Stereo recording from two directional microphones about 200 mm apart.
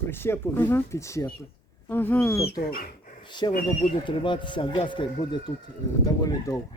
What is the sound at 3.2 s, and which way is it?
Speech, 20° left (ahead or behind).